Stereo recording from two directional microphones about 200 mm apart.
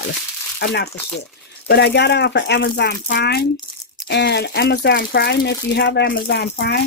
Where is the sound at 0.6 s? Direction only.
55° left (ahead or behind).